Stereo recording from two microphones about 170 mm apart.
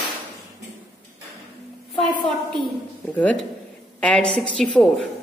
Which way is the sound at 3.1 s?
10° left (ahead or behind).